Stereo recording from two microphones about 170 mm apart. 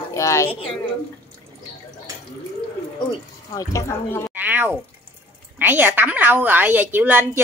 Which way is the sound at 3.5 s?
20° left (ahead or behind).